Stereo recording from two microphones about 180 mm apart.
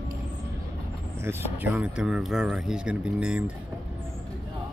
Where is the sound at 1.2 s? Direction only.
10° right (ahead or behind).